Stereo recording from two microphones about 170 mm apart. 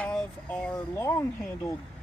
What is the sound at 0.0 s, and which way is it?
Speech, 10° left (ahead or behind).